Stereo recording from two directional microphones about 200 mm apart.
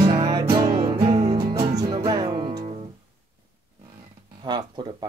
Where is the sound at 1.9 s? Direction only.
20° right (ahead or behind).